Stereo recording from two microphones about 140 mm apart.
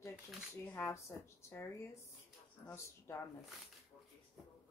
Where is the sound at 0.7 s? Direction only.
20° left (ahead or behind).